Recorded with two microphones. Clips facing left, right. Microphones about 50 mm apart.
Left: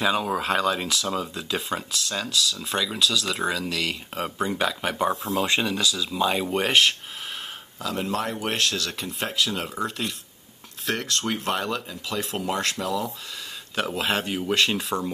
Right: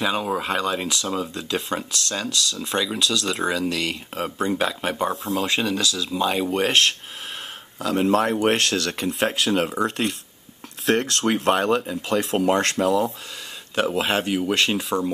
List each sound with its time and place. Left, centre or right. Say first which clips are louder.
0.4 s speech: even; centre
7.8 s speech: right 7 dB; right
8.4 s speech: right 6 dB; right
11.5 s speech: right 7 dB; right
13.7 s speech: right 4 dB; centre